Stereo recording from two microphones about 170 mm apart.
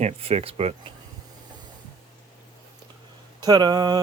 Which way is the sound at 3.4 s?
25° right (ahead or behind).